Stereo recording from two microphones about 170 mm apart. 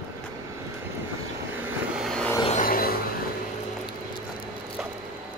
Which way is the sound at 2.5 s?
55° left (ahead or behind).